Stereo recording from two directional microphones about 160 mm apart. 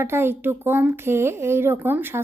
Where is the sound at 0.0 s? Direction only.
15° right (ahead or behind).